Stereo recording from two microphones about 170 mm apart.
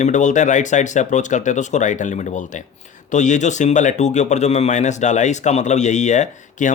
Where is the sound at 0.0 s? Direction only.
45° left (ahead or behind).